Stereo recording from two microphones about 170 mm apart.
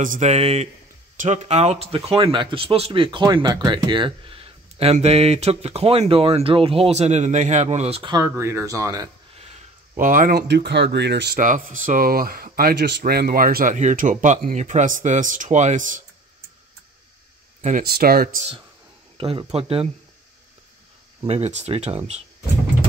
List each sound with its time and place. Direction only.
0.0 s speech: 45° right (ahead or behind); by 9.1 s 20° right (ahead or behind)
9.9 s speech: 50° right (ahead or behind)
10.5 s speech: 80° right
11.3 s speech: 50° right (ahead or behind)
13.7 s speech: 45° right (ahead or behind)
17.6 s speech: 40° right (ahead or behind)
17.8 s speech: 65° right (ahead or behind)
19.1 s speech: 30° right (ahead or behind)
21.3 s speech: 40° right (ahead or behind)